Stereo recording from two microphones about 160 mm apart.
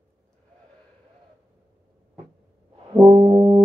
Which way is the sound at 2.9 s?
30° right (ahead or behind).